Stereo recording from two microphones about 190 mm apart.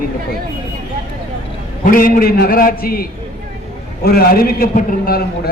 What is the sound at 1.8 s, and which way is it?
A man's voice, 45° left (ahead or behind).